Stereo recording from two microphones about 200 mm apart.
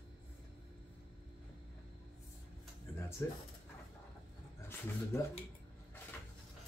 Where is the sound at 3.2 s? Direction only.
15° left (ahead or behind).